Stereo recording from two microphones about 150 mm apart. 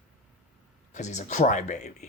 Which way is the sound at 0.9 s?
50° left (ahead or behind).